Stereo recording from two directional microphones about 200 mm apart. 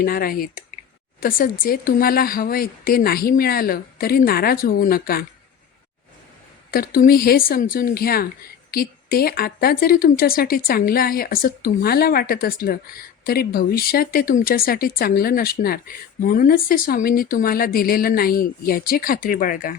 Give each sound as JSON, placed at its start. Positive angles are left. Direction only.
{"t": 0.0, "sound": "speech", "side_deg": 45}
{"t": 6.7, "sound": "speech", "side_deg": 45}